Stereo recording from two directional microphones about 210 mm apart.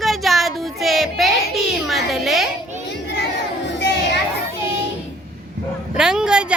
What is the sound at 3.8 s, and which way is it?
Children playing, 50° left (ahead or behind).